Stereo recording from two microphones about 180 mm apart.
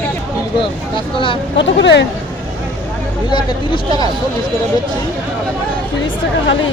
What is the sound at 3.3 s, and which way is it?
Speech, 25° left (ahead or behind).